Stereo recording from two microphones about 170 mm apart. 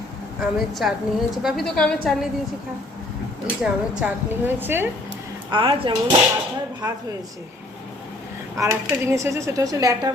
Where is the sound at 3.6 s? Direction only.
5° right (ahead or behind).